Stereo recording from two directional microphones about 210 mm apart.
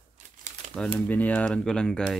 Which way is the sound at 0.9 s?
10° left (ahead or behind).